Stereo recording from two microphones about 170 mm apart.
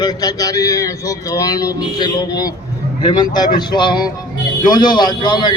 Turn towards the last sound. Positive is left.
turn(degrees=25)  # may be behind; listen again after turning